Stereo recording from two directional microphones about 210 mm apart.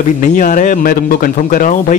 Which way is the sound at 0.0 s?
35° left (ahead or behind).